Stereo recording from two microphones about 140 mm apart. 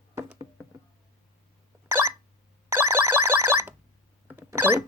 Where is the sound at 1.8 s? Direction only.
15° right (ahead or behind).